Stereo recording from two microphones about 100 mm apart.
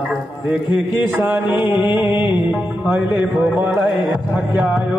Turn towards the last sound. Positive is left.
turn(degrees=0)  # may be behind; listen again after turning